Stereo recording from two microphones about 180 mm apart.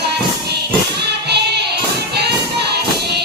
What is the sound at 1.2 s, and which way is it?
Child singing, 65° right (ahead or behind).